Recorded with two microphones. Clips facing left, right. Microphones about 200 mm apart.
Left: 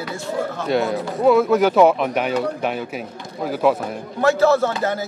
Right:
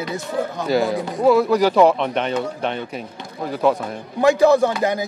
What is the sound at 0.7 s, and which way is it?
Speech, centre (ahead or behind).